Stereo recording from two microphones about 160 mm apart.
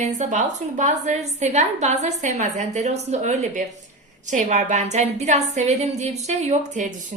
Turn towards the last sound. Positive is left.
turn(degrees=-50)  # may be behind; listen again after turning